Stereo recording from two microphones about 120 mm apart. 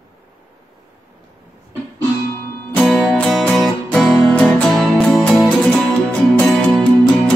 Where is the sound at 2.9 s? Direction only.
Centre (ahead or behind).